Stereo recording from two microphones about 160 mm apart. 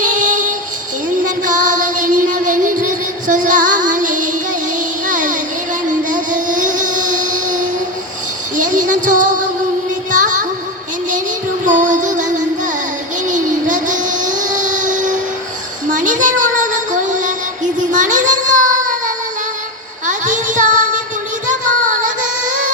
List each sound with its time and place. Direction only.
0.0 s music: 55° right (ahead or behind)
5.0 s child singing: 55° right (ahead or behind)
6.1 s a sound: 55° right (ahead or behind)
8.5 s music: 55° right (ahead or behind)
11.6 s music: 55° right (ahead or behind)
13.2 s a sound: 50° right (ahead or behind)
15.9 s child singing: 55° right (ahead or behind)